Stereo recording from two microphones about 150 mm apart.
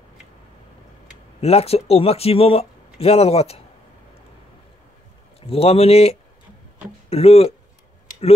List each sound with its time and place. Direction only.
1.4 s speech: 45° left (ahead or behind)
5.5 s speech: 40° left (ahead or behind)